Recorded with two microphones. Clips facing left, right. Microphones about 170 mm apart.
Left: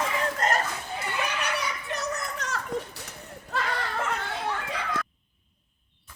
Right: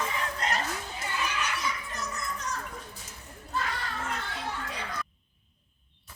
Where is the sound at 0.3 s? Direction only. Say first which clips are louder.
Left 4 dB; 45° left (ahead or behind); by 4.1 s 75° left (ahead or behind).